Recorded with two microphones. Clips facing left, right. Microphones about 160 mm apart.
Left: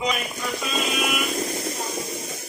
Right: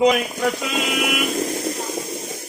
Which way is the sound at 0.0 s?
70° right (ahead or behind).